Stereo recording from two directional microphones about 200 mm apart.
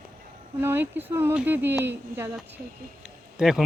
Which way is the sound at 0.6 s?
10° right (ahead or behind).